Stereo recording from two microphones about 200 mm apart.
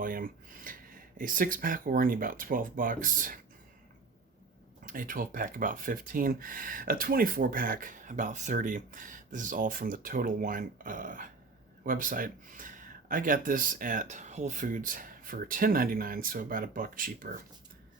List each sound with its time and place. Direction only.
0.0 s speech: 45° right (ahead or behind)
4.9 s speech: 45° right (ahead or behind)